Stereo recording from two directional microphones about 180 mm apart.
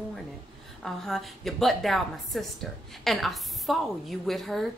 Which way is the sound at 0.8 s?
Centre (ahead or behind).